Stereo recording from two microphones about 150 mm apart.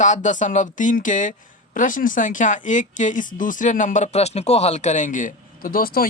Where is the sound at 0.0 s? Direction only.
55° left (ahead or behind).